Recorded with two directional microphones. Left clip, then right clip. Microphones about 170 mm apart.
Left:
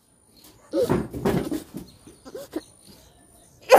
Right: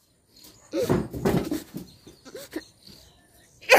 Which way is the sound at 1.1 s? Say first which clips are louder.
Left 1 dB; 35° right (ahead or behind).